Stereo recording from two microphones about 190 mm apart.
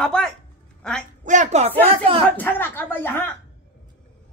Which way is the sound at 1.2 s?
40° right (ahead or behind).